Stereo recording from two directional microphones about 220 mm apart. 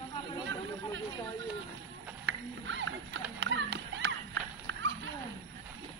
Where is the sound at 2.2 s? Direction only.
55° right (ahead or behind).